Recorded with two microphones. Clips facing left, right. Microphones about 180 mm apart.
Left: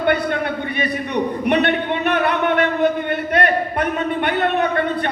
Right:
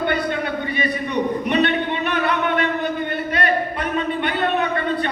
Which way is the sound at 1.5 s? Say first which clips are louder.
Left 4 dB; 55° left (ahead or behind).